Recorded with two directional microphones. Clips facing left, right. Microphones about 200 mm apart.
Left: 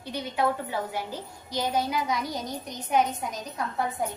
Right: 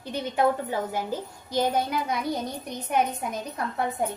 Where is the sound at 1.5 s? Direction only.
55° right (ahead or behind).